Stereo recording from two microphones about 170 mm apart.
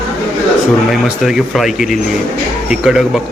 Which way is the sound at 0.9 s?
Centre (ahead or behind).